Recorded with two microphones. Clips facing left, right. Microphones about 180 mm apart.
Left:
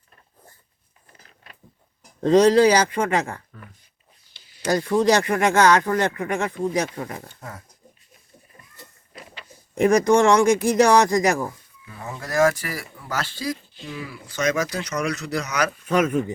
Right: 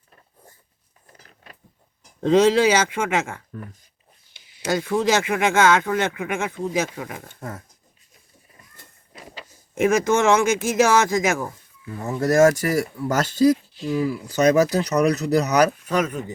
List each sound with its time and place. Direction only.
2.2 s speech: 5° right (ahead or behind)
9.7 s speech: centre (ahead or behind)
11.9 s speech: 45° right (ahead or behind)